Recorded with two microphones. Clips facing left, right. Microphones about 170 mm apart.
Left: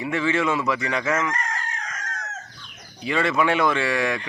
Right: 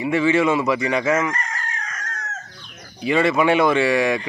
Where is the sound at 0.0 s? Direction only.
15° right (ahead or behind).